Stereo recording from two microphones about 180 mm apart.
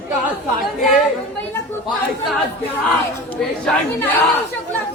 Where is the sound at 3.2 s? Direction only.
5° left (ahead or behind).